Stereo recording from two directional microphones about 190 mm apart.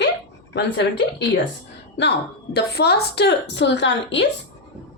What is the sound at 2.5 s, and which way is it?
A woman's voice, 60° left (ahead or behind).